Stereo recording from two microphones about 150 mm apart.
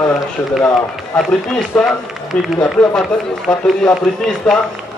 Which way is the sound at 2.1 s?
5° right (ahead or behind).